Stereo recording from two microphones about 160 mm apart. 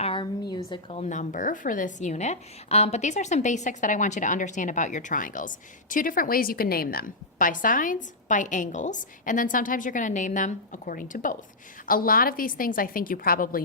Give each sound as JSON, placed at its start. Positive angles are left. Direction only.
{"t": 0.0, "sound": "a sound", "side_deg": 35}
{"t": 0.5, "sound": "speech", "side_deg": 35}
{"t": 1.1, "sound": "a woman's voice", "side_deg": 55}